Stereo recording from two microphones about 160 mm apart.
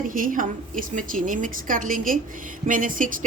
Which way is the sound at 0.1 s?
60° right (ahead or behind).